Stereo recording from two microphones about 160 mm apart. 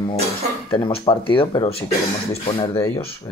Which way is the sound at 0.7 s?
30° left (ahead or behind).